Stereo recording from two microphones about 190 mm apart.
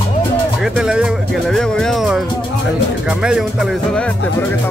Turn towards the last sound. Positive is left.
turn(degrees=0)  # may be behind; listen again after turning